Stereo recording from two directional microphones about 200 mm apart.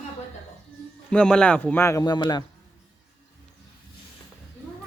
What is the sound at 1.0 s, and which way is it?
A man's voice, 5° left (ahead or behind).